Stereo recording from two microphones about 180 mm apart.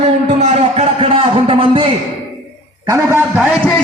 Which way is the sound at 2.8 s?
15° right (ahead or behind).